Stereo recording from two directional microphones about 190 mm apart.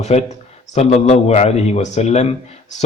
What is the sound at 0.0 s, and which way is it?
Speech, 35° left (ahead or behind).